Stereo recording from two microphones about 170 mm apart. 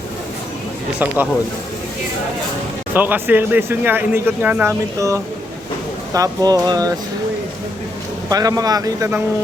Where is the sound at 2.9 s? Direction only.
10° right (ahead or behind).